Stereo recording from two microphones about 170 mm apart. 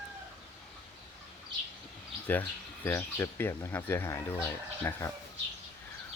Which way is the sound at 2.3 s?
10° left (ahead or behind).